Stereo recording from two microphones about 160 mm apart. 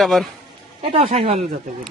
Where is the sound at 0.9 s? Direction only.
35° right (ahead or behind).